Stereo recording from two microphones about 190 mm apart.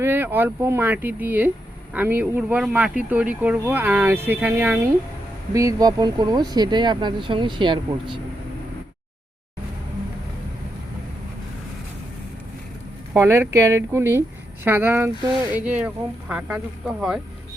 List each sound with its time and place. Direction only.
0.0 s speech: 10° right (ahead or behind)
13.1 s speech: 10° right (ahead or behind)